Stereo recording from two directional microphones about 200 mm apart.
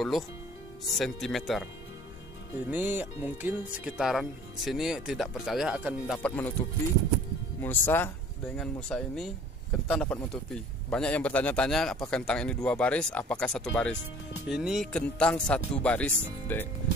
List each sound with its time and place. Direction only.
0.8 s speech: centre (ahead or behind)
2.5 s speech: 10° right (ahead or behind); by 6.5 s 5° left (ahead or behind)
7.6 s speech: 10° left (ahead or behind)